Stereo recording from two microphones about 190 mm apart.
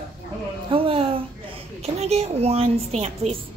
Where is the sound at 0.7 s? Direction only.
30° right (ahead or behind).